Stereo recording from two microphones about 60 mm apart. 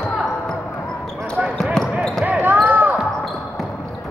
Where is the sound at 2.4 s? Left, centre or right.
Right.